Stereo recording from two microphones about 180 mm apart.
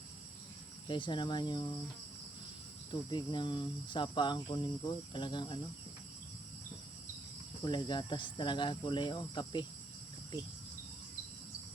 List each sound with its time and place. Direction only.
0.9 s speech: 25° left (ahead or behind)
2.9 s speech: 25° left (ahead or behind)
7.6 s speech: 25° left (ahead or behind)